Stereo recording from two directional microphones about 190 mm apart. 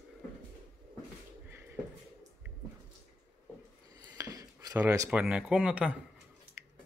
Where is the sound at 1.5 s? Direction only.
10° right (ahead or behind).